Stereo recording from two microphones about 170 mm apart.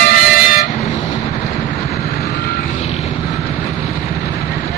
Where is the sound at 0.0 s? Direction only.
55° left (ahead or behind).